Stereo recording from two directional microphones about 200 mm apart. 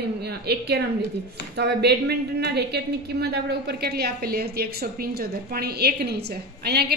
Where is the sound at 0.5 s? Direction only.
55° right (ahead or behind).